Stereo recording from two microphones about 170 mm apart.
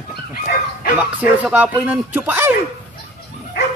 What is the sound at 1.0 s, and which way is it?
A man's voice, 10° right (ahead or behind).